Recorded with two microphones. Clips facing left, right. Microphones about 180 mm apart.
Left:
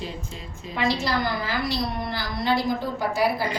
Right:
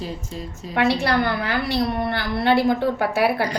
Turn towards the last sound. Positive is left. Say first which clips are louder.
# right 3 dB
turn(degrees=-65)  # may be behind; listen again after turning